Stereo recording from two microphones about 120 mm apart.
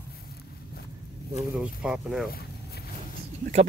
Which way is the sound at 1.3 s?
10° right (ahead or behind).